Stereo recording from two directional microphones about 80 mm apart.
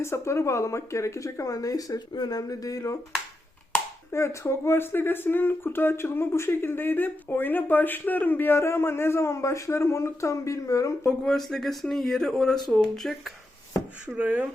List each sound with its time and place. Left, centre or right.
0.0 s speech: left
4.1 s speech: left
11.0 s speech: centre
14.2 s speech: right